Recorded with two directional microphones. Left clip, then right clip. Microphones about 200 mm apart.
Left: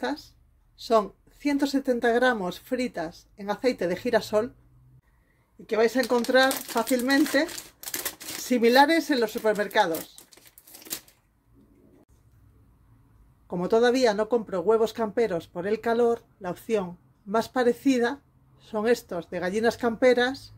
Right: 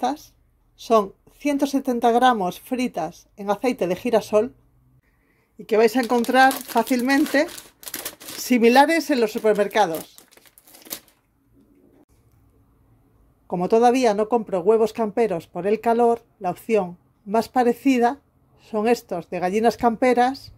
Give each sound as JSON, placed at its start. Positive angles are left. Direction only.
{"t": 0.0, "sound": "speech", "side_deg": -30}
{"t": 5.7, "sound": "speech", "side_deg": -45}
{"t": 8.5, "sound": "speech", "side_deg": -40}
{"t": 13.5, "sound": "speech", "side_deg": -30}